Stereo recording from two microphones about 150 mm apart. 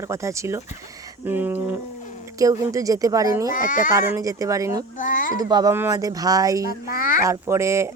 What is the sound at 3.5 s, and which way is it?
Speech, 60° left (ahead or behind).